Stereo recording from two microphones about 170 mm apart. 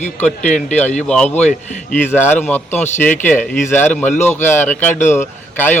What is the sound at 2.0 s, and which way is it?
Speech, 10° left (ahead or behind).